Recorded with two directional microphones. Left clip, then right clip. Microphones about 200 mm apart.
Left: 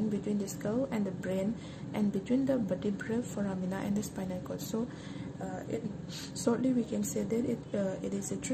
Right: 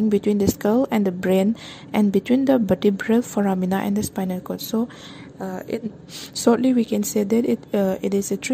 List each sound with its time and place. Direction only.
0.1 s a woman's voice: 50° right (ahead or behind)
6.3 s a woman's voice: 45° right (ahead or behind)